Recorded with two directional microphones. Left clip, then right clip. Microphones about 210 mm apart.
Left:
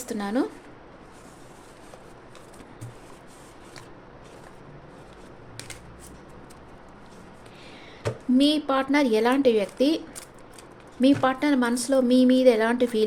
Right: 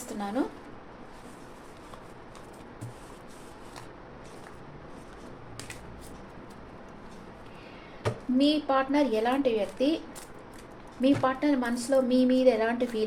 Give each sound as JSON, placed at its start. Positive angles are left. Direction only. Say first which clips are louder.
{"t": 0.1, "sound": "a woman's voice", "louder": "left 4 dB", "side_deg": 50}
{"t": 8.4, "sound": "a woman's voice", "louder": "left 2 dB", "side_deg": 45}
{"t": 11.0, "sound": "a woman's voice", "louder": "left 4 dB", "side_deg": 50}